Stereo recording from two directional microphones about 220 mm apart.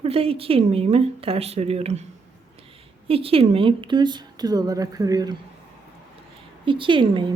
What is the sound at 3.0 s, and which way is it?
A woman's voice, 25° right (ahead or behind).